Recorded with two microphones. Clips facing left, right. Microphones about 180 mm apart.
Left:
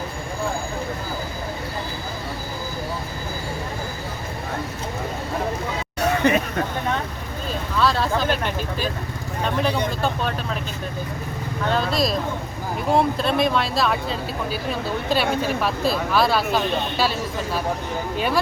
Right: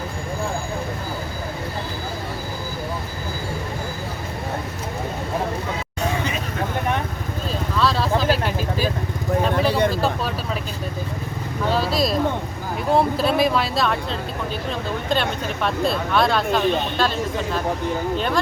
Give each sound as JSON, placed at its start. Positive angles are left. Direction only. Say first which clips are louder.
{"t": 6.0, "sound": "vehicle", "louder": "left 7 dB", "side_deg": 65}
{"t": 7.8, "sound": "vehicle", "louder": "even", "side_deg": 0}
{"t": 9.4, "sound": "vehicle", "louder": "right 2 dB", "side_deg": 0}
{"t": 11.6, "sound": "vehicle", "louder": "right 1 dB", "side_deg": -5}